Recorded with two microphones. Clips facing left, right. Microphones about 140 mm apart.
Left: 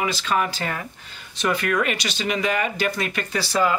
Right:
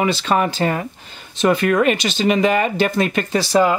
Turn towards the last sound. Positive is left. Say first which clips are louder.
# right 6 dB
turn(degrees=-25)  # may be behind; listen again after turning